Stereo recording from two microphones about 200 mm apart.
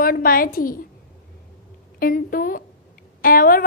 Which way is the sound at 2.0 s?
45° left (ahead or behind).